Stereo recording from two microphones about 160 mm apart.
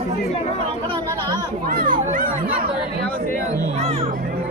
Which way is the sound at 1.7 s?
60° right (ahead or behind).